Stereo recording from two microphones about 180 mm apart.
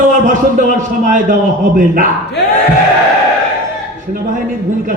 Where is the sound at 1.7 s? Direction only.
50° right (ahead or behind).